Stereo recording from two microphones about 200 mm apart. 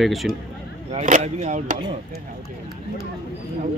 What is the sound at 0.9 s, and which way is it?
Speech, 35° right (ahead or behind).